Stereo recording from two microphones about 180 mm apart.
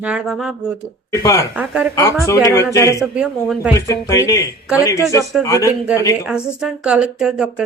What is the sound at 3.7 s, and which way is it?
Speech, 15° left (ahead or behind).